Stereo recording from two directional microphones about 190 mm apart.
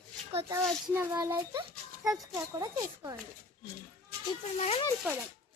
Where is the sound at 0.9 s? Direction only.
15° right (ahead or behind).